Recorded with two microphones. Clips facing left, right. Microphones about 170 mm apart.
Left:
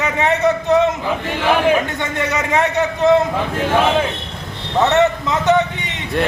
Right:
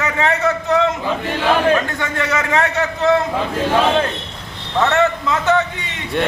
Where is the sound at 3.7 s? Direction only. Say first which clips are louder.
Even; 5° left (ahead or behind).